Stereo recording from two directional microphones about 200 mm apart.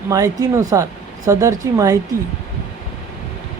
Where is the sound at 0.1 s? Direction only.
15° right (ahead or behind).